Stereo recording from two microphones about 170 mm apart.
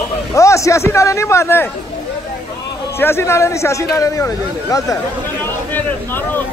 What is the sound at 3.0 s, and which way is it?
A man's voice, 15° left (ahead or behind).